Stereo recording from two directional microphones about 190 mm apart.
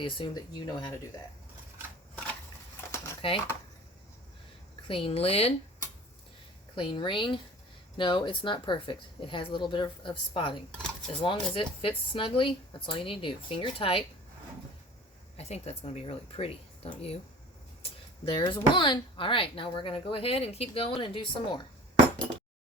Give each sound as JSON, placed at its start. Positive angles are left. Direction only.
{"t": 0.0, "sound": "speech", "side_deg": 25}
{"t": 3.2, "sound": "speech", "side_deg": 30}
{"t": 4.9, "sound": "speech", "side_deg": 30}
{"t": 6.7, "sound": "speech", "side_deg": 25}
{"t": 15.4, "sound": "speech", "side_deg": 35}
{"t": 18.3, "sound": "speech", "side_deg": 25}